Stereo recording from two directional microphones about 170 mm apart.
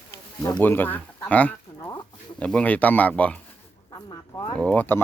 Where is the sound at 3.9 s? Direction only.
25° left (ahead or behind).